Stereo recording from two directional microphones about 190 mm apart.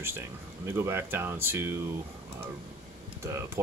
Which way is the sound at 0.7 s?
15° right (ahead or behind).